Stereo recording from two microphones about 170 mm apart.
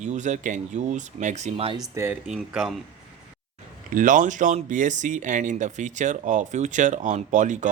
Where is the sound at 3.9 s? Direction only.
50° right (ahead or behind).